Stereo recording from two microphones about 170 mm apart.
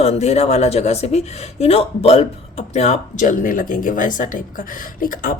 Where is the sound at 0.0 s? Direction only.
40° left (ahead or behind).